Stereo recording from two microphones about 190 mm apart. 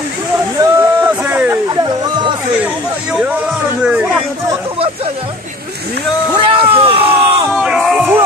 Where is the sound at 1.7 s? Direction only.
20° right (ahead or behind).